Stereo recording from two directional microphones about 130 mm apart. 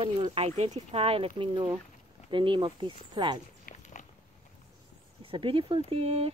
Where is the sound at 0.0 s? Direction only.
45° right (ahead or behind).